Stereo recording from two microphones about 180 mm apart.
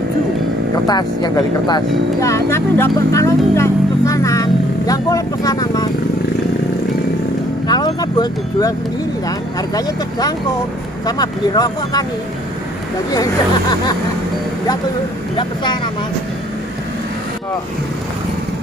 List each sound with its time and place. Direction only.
0.8 s speech: 25° left (ahead or behind)
7.6 s speech: 20° left (ahead or behind)
13.1 s speech: 20° left (ahead or behind)
15.3 s speech: 25° left (ahead or behind)